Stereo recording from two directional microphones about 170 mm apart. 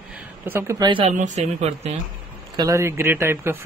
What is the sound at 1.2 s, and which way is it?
Speech, 45° right (ahead or behind).